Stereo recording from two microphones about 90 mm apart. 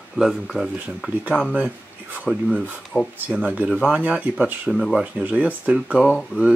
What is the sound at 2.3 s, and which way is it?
Speech, 15° right (ahead or behind).